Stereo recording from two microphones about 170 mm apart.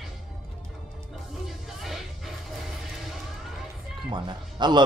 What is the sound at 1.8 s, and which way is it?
Music, centre (ahead or behind).